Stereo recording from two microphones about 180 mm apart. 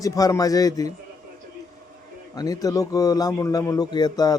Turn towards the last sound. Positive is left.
turn(degrees=20)  # may be behind; listen again after turning